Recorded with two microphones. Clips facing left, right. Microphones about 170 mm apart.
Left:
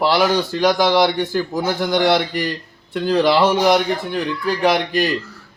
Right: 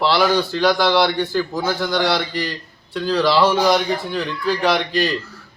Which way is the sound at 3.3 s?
15° left (ahead or behind).